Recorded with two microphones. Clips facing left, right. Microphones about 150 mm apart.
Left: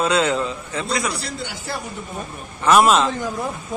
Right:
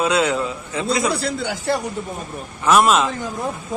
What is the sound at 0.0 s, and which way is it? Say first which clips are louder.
Speech: even; 10° right (ahead or behind).